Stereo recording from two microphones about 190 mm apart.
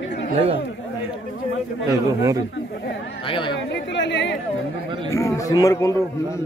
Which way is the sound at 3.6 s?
70° left (ahead or behind).